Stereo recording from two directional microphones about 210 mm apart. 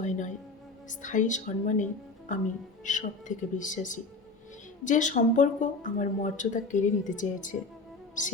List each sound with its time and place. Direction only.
0.0 s speech: 35° left (ahead or behind)